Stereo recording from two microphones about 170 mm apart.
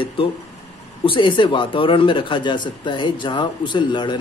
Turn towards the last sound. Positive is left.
turn(degrees=25)  # may be behind; listen again after turning